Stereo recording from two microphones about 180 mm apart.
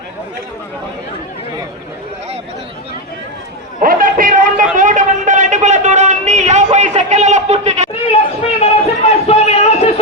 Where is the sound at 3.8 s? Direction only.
50° right (ahead or behind).